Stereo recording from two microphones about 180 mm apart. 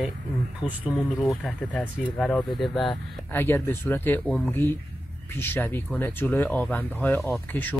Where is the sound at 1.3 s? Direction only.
10° left (ahead or behind).